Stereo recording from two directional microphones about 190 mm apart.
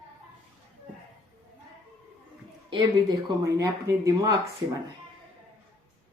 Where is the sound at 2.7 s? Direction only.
20° right (ahead or behind).